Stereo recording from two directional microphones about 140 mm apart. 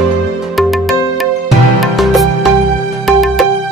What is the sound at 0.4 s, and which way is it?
Music, centre (ahead or behind).